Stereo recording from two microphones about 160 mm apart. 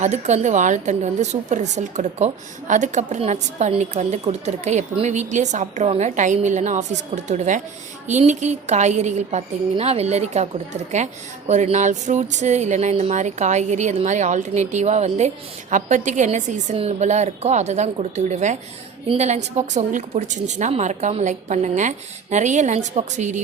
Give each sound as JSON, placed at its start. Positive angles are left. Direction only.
{"t": 0.0, "sound": "a woman's voice", "side_deg": -45}